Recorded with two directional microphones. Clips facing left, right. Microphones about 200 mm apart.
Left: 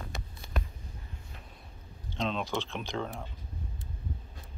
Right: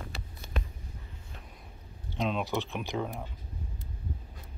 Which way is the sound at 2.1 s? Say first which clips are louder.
Right 2 dB; 10° right (ahead or behind).